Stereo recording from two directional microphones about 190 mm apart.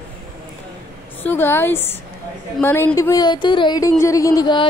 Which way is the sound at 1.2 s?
10° left (ahead or behind).